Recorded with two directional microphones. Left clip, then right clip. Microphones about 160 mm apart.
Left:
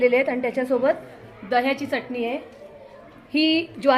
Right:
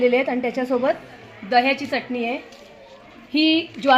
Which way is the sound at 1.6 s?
15° right (ahead or behind).